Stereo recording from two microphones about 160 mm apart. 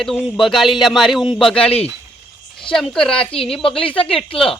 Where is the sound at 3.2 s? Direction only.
35° left (ahead or behind).